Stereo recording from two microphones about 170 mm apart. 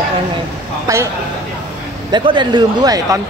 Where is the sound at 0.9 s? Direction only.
20° right (ahead or behind).